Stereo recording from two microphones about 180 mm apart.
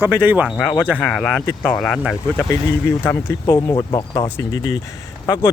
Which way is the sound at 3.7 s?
25° left (ahead or behind).